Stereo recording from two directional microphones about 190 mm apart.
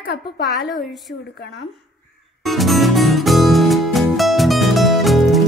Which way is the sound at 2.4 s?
Centre (ahead or behind).